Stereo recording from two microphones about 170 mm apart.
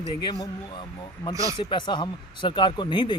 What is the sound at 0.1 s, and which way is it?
Speech, 25° left (ahead or behind).